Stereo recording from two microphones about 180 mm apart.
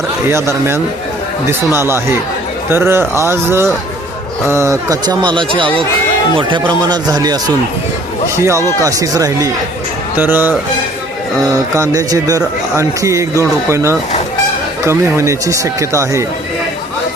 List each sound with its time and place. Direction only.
0.3 s a man's voice: 15° right (ahead or behind)
8.8 s a man's voice: 20° right (ahead or behind)
11.7 s a man's voice: 15° right (ahead or behind)